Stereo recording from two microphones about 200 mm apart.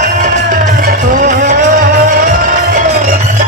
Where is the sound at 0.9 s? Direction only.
40° right (ahead or behind).